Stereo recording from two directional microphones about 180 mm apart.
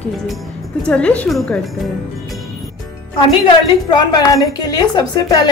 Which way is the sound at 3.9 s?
20° left (ahead or behind).